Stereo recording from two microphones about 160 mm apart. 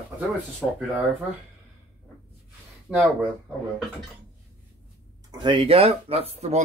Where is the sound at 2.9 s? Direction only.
5° right (ahead or behind).